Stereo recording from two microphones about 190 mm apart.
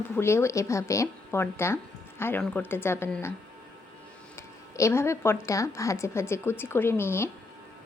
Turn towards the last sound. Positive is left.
turn(degrees=15)  # may be behind; listen again after turning